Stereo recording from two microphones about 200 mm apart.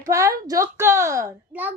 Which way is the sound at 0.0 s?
15° right (ahead or behind).